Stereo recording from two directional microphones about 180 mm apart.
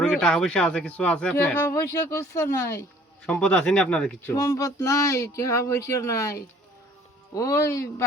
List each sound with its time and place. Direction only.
0.0 s speech: 5° left (ahead or behind)
3.2 s speech: 5° left (ahead or behind)
4.4 s speech: 20° left (ahead or behind)
7.3 s speech: 20° left (ahead or behind)